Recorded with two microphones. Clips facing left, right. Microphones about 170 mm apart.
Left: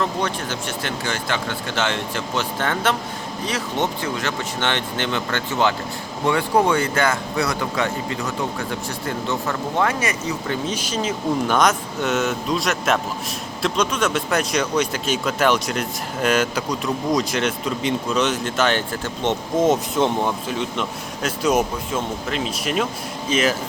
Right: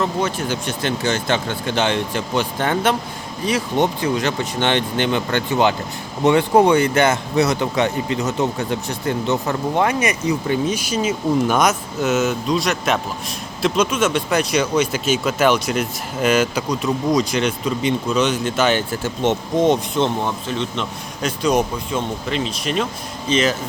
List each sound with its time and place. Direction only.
0.0 s speech: 5° right (ahead or behind)